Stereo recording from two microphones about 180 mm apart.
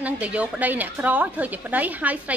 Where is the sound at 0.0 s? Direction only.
10° right (ahead or behind).